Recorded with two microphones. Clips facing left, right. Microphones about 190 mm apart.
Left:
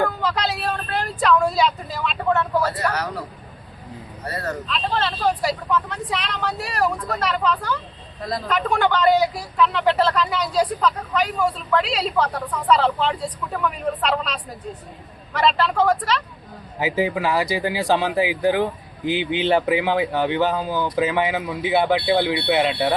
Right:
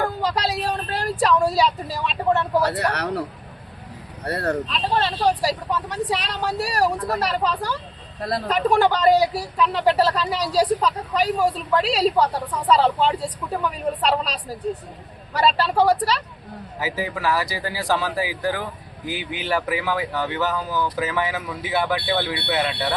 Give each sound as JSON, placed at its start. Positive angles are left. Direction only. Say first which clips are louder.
{"t": 0.2, "sound": "a sound", "louder": "right 1 dB", "side_deg": -35}
{"t": 2.9, "sound": "a man's voice", "louder": "right 2 dB", "side_deg": -65}
{"t": 4.7, "sound": "speech", "louder": "right 1 dB", "side_deg": -35}
{"t": 16.8, "sound": "speech", "louder": "left 4 dB", "side_deg": 20}